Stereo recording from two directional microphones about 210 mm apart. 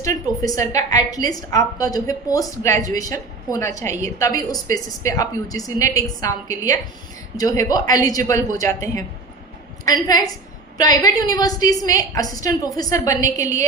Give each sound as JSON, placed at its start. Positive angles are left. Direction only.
{"t": 0.0, "sound": "a woman's voice", "side_deg": 15}